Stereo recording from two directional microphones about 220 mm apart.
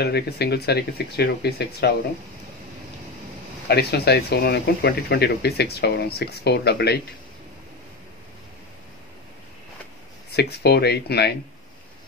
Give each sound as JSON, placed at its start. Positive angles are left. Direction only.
{"t": 0.0, "sound": "speech", "side_deg": 50}
{"t": 3.6, "sound": "speech", "side_deg": 45}
{"t": 10.3, "sound": "speech", "side_deg": 50}